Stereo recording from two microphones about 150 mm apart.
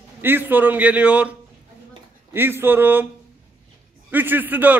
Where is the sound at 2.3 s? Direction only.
15° right (ahead or behind).